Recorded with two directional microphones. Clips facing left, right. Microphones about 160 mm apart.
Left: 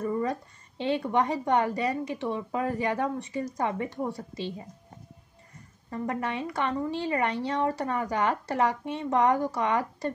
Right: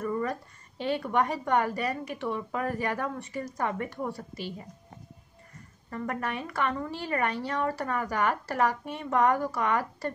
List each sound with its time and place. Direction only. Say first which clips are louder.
0.0 s speech: left 2 dB; 20° left (ahead or behind)
5.9 s speech: left 2 dB; 25° left (ahead or behind)